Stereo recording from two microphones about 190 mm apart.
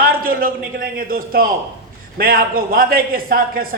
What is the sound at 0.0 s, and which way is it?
A man's voice, 50° right (ahead or behind).